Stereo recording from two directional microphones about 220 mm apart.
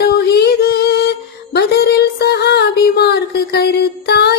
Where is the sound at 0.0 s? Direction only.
45° left (ahead or behind).